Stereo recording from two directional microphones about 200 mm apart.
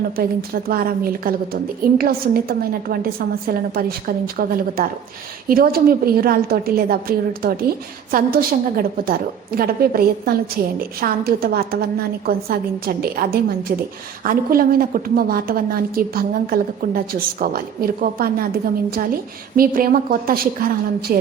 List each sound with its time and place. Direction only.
0.2 s a woman's voice: 50° right (ahead or behind)
19.5 s a woman's voice: 45° right (ahead or behind)